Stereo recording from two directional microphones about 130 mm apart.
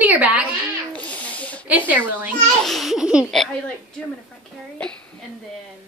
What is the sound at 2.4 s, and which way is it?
A child's voice, centre (ahead or behind).